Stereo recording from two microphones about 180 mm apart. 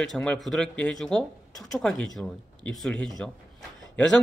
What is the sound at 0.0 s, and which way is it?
Speech, 5° left (ahead or behind).